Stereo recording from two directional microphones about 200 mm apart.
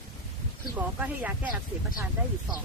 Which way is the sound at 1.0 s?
10° right (ahead or behind).